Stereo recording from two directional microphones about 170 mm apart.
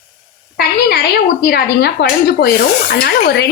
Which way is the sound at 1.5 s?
70° left (ahead or behind).